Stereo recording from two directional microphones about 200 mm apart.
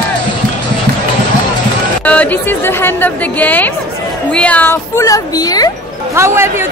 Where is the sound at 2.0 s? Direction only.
5° left (ahead or behind).